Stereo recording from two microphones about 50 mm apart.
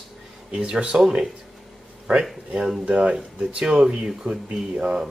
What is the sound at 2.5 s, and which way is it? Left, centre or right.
Speech, centre.